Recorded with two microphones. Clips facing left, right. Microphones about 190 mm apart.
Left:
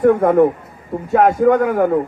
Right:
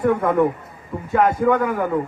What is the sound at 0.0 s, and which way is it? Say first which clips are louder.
A man's voice: left 6 dB; 50° left (ahead or behind).